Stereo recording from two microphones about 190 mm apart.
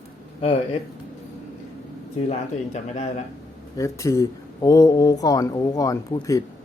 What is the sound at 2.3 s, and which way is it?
Speech, 35° left (ahead or behind).